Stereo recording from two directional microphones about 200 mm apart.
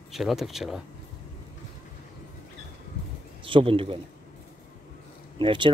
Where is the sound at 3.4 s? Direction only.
25° right (ahead or behind).